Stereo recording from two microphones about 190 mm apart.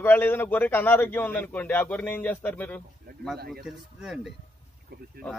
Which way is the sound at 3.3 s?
55° right (ahead or behind).